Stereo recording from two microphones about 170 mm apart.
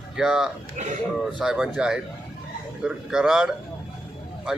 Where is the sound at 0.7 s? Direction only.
45° right (ahead or behind).